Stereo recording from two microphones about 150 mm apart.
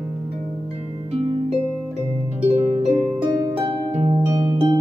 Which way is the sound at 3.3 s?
30° right (ahead or behind).